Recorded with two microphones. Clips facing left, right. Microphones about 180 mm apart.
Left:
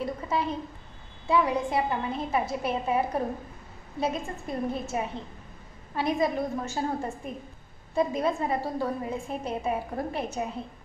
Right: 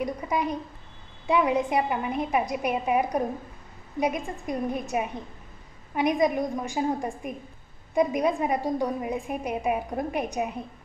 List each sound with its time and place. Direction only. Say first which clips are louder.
0.0 s a woman's voice: right 2 dB; 15° right (ahead or behind)